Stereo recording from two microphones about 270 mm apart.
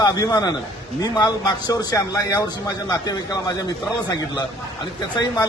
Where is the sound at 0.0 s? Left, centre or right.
Centre.